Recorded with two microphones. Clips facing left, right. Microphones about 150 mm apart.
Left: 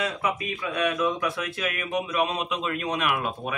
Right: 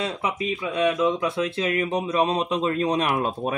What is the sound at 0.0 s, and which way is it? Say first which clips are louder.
Speech: right 1 dB; 25° right (ahead or behind).